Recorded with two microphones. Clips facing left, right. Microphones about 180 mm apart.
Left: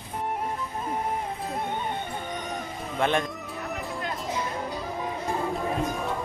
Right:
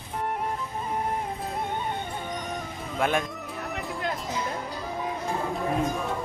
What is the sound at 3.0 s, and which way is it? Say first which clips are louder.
Speech: left 1 dB; 5° right (ahead or behind).